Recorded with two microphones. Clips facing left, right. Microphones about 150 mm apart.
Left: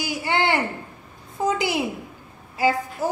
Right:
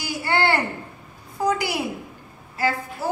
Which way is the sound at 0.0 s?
15° left (ahead or behind).